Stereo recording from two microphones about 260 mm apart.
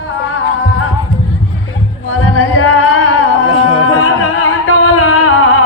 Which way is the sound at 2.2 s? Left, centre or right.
Left.